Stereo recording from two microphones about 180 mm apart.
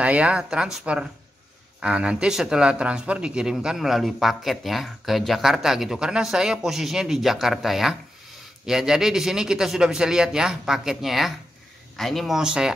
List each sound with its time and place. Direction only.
0.0 s speech: 5° right (ahead or behind)